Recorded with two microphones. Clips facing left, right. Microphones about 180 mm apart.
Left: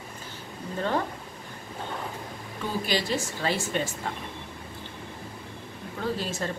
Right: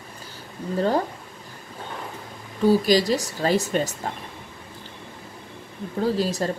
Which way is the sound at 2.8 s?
40° right (ahead or behind).